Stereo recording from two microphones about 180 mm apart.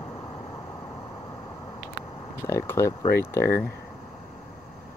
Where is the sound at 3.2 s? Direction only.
15° left (ahead or behind).